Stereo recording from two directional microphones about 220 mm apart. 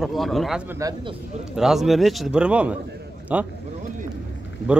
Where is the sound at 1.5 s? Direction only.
Centre (ahead or behind).